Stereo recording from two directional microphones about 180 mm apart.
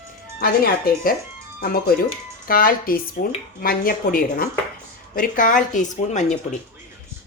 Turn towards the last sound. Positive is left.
turn(degrees=40)  # may be behind; listen again after turning